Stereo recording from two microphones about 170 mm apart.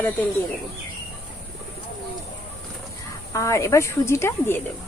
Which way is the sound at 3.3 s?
15° left (ahead or behind).